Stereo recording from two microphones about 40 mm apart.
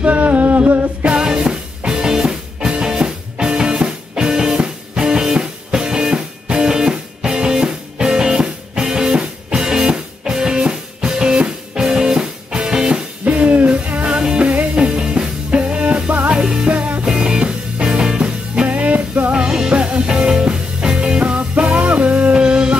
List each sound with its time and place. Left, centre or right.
0.0 s humming: right
1.0 s music: right
13.2 s music: right
13.7 s music: right
14.9 s music: centre
15.7 s music: right
16.3 s music: centre
16.7 s music: right
17.0 s music: centre
18.5 s music: right
19.3 s music: centre
21.4 s music: right
22.4 s music: right